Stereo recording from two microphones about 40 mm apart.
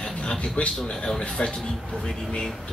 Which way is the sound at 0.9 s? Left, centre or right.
Centre.